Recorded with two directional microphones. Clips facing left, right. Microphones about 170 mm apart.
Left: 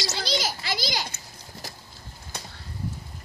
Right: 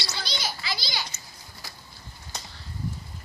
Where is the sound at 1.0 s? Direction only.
45° left (ahead or behind).